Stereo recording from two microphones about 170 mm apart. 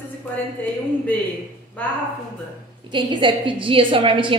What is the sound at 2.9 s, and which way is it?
A woman's voice, 30° right (ahead or behind).